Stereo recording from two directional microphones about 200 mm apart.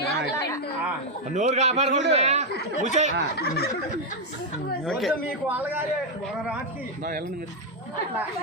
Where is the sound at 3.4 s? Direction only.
50° left (ahead or behind).